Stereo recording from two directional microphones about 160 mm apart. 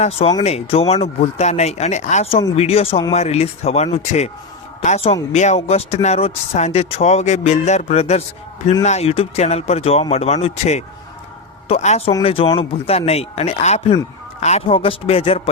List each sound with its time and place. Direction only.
0.0 s speech: 35° left (ahead or behind)